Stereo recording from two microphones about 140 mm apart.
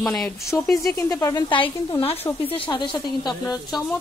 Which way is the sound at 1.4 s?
35° left (ahead or behind).